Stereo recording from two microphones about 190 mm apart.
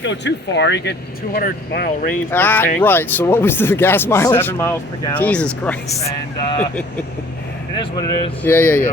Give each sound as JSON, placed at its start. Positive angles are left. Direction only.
{"t": 0.0, "sound": "speech", "side_deg": 70}
{"t": 2.3, "sound": "speech", "side_deg": 10}
{"t": 7.8, "sound": "speech", "side_deg": 25}
{"t": 8.4, "sound": "speech", "side_deg": 10}